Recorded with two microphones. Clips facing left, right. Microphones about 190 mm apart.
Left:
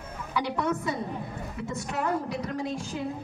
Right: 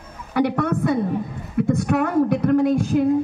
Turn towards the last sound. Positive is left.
turn(degrees=-60)  # may be behind; listen again after turning